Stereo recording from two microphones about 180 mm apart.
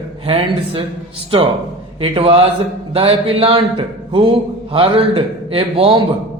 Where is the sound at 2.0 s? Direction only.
30° right (ahead or behind).